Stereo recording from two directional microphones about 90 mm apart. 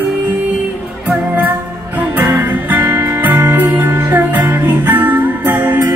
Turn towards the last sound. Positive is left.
turn(degrees=-20)  # may be behind; listen again after turning